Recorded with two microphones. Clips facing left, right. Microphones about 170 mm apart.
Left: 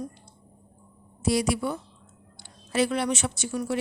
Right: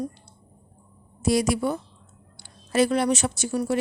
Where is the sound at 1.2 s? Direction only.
45° right (ahead or behind).